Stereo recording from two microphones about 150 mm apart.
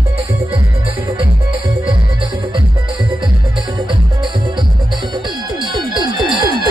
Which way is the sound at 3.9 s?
30° right (ahead or behind).